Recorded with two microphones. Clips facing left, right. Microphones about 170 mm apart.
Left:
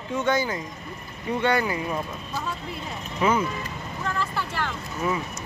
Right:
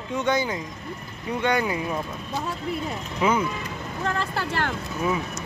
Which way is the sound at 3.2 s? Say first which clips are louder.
Even; 15° right (ahead or behind).